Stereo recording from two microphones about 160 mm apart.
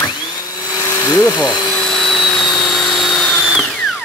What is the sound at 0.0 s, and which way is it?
Dental drill, 25° left (ahead or behind).